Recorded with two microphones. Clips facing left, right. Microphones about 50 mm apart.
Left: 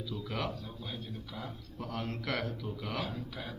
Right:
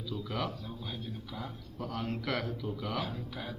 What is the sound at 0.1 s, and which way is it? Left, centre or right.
Speech, centre.